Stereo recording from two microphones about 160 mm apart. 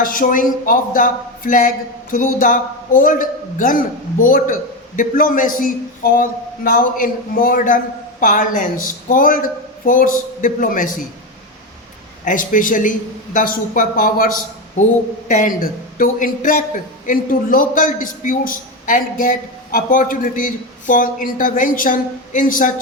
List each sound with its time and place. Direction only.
0.0 s a man's voice: 60° left (ahead or behind)
12.2 s a man's voice: 55° left (ahead or behind)